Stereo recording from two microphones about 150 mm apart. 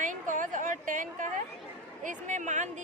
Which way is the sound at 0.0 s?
60° right (ahead or behind).